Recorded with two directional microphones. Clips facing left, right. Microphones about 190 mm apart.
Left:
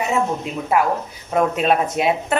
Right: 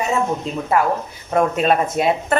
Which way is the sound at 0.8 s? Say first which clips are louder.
Even; 10° left (ahead or behind).